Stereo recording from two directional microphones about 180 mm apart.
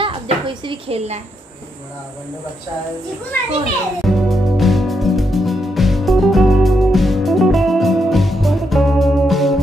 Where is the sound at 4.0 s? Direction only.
Centre (ahead or behind).